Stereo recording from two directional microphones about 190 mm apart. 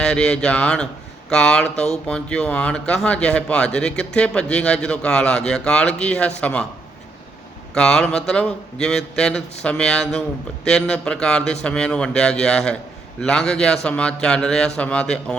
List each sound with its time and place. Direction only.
0.0 s speech: 5° left (ahead or behind)
7.7 s speech: 5° left (ahead or behind)